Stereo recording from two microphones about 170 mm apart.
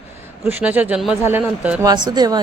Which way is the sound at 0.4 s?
10° right (ahead or behind).